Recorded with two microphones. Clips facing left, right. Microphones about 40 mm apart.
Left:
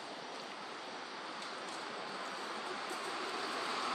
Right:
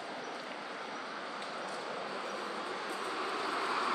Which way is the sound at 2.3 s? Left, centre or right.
Centre.